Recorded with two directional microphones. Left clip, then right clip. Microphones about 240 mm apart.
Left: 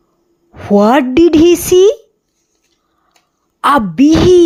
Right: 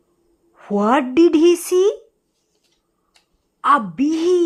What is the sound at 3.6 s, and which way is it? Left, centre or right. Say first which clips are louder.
Speech: left 6 dB; left.